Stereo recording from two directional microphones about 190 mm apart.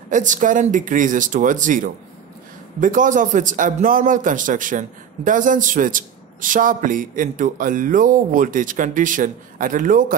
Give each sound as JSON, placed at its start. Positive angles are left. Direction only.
{"t": 0.1, "sound": "a man's voice", "side_deg": -40}